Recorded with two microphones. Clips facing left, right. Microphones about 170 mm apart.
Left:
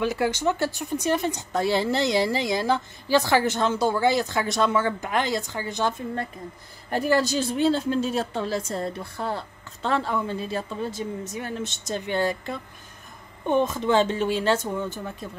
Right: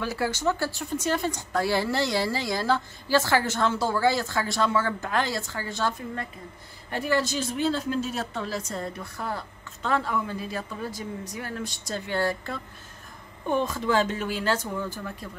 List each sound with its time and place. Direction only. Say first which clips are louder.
0.0 s speech: left 3 dB; 20° left (ahead or behind)
6.9 s speech: left 4 dB; 35° left (ahead or behind); by 15.2 s 20° left (ahead or behind)